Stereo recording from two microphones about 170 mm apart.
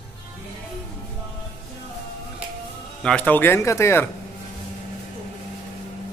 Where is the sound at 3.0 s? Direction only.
10° left (ahead or behind).